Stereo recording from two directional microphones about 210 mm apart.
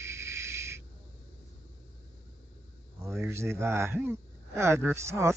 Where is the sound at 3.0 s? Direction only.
10° right (ahead or behind).